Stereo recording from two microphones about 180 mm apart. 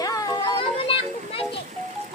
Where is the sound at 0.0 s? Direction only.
20° left (ahead or behind).